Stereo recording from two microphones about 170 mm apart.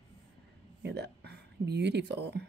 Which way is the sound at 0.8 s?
75° right (ahead or behind).